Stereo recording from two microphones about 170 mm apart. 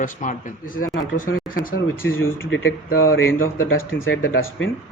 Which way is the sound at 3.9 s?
90° left.